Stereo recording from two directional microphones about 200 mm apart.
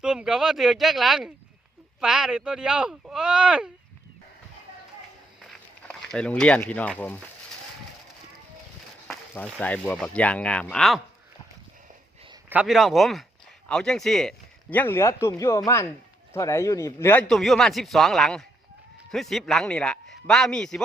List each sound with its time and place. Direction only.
0.0 s speech: 5° right (ahead or behind)
5.4 s a sound: centre (ahead or behind)
9.0 s speech: 5° left (ahead or behind)
12.5 s speech: 5° right (ahead or behind)